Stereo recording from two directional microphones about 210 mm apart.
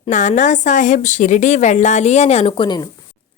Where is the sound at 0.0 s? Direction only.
35° left (ahead or behind).